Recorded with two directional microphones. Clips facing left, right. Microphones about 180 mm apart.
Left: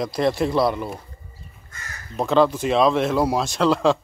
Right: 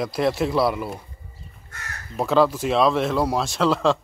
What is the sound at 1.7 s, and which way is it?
Crow, 65° right (ahead or behind).